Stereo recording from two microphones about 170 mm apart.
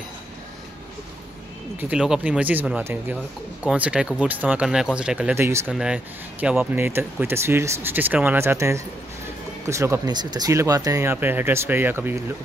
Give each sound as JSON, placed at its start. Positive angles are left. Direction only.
{"t": 1.8, "sound": "speech", "side_deg": -5}